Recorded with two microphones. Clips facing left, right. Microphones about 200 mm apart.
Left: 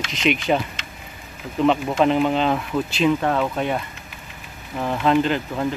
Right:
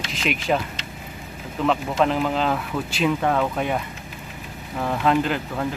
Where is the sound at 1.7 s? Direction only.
Centre (ahead or behind).